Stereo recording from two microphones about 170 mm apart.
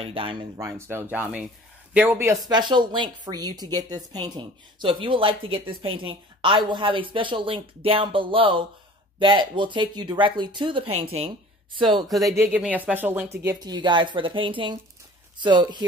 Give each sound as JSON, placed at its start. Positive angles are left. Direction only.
{"t": 0.0, "sound": "speech", "side_deg": -30}
{"t": 0.6, "sound": "speech", "side_deg": -15}
{"t": 12.3, "sound": "speech", "side_deg": -10}
{"t": 13.4, "sound": "speech", "side_deg": -20}